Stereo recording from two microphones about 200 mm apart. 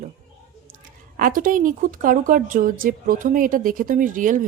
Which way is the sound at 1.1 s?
45° right (ahead or behind).